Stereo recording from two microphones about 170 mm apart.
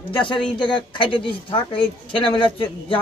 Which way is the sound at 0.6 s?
30° left (ahead or behind).